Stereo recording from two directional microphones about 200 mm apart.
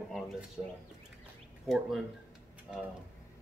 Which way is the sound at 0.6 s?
10° right (ahead or behind).